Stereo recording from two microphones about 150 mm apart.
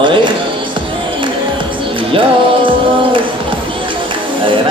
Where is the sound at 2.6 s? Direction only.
35° right (ahead or behind).